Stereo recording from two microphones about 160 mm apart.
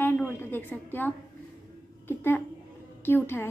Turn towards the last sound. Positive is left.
turn(degrees=15)  # may be behind; listen again after turning